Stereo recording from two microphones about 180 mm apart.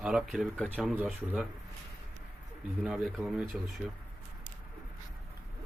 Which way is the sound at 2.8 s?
5° right (ahead or behind).